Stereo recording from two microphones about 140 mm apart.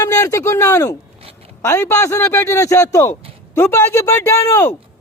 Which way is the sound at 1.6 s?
20° left (ahead or behind).